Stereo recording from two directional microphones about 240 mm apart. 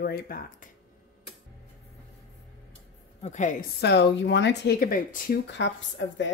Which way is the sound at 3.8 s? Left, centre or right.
Left.